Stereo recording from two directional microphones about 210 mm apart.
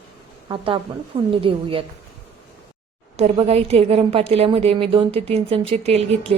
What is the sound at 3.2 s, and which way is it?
A woman's voice, 30° right (ahead or behind).